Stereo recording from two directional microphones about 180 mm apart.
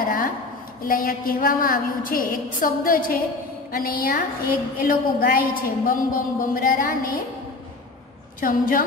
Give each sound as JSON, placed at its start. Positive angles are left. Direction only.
{"t": 0.8, "sound": "a woman's voice", "side_deg": 50}
{"t": 8.4, "sound": "a woman's voice", "side_deg": 50}